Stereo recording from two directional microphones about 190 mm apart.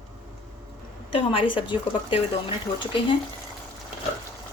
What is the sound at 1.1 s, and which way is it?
A woman's voice, 30° left (ahead or behind).